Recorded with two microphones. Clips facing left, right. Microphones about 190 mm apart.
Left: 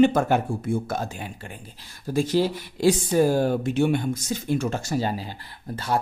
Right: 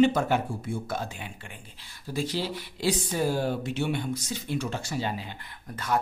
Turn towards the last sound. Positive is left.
turn(degrees=30)  # may be behind; listen again after turning